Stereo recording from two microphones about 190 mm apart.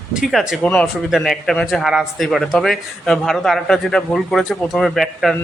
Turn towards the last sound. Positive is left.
turn(degrees=0)  # may be behind; listen again after turning